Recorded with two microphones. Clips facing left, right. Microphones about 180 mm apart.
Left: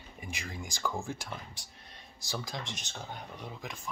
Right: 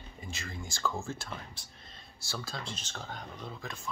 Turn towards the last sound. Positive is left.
turn(degrees=15)  # may be behind; listen again after turning